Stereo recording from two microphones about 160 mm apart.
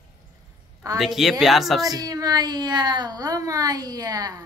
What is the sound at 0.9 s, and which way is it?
Speech, centre (ahead or behind).